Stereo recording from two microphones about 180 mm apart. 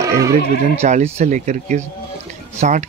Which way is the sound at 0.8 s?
40° right (ahead or behind).